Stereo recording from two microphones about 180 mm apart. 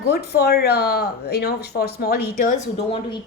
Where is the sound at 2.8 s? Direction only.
30° left (ahead or behind).